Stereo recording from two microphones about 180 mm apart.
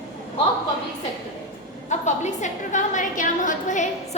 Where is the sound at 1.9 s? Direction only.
40° left (ahead or behind).